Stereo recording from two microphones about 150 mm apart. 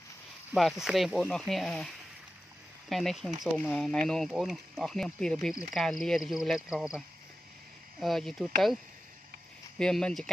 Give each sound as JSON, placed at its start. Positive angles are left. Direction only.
{"t": 0.5, "sound": "speech", "side_deg": -15}
{"t": 0.8, "sound": "speech", "side_deg": 0}
{"t": 2.9, "sound": "speech", "side_deg": 0}
{"t": 8.0, "sound": "speech", "side_deg": 0}
{"t": 9.8, "sound": "speech", "side_deg": 5}